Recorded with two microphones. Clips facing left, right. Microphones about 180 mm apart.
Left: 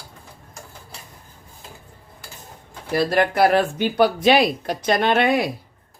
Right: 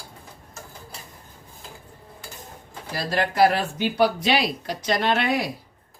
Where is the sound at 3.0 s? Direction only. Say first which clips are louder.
Left 1 dB; 55° left (ahead or behind).